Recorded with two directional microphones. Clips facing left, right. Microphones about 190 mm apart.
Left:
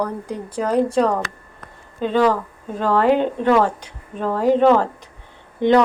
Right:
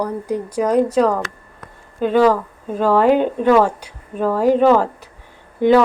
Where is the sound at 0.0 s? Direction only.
10° right (ahead or behind).